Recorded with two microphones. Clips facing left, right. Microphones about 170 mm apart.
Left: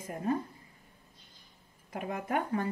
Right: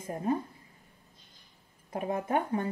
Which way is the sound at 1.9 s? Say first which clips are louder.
Right 3 dB; 30° right (ahead or behind).